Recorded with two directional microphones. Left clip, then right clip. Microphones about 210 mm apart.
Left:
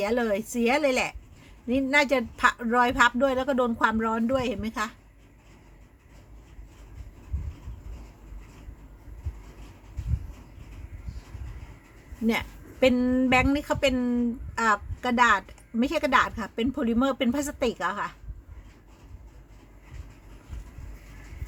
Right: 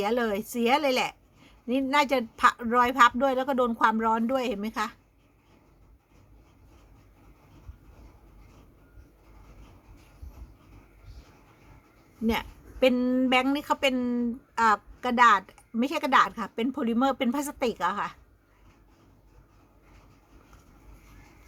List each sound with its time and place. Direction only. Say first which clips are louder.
0.0 s a woman's voice: left 1 dB; 20° right (ahead or behind)
12.2 s a woman's voice: left 1 dB; 15° right (ahead or behind)